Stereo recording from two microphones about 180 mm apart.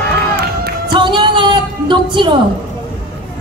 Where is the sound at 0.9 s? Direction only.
25° right (ahead or behind).